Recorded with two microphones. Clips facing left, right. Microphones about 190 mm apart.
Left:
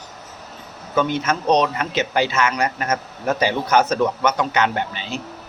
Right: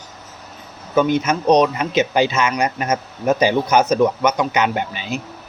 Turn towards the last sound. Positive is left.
turn(degrees=-15)  # may be behind; listen again after turning